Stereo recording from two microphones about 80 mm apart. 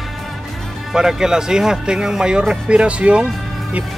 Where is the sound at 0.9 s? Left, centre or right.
Centre.